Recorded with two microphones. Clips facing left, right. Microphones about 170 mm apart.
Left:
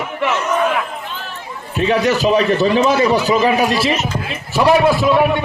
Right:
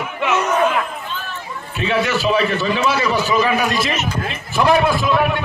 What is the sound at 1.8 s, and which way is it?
A man's voice, 40° left (ahead or behind).